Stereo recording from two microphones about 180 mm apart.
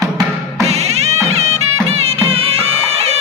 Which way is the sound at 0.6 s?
35° right (ahead or behind).